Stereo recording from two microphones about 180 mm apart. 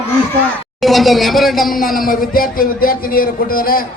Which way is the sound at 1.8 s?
50° left (ahead or behind).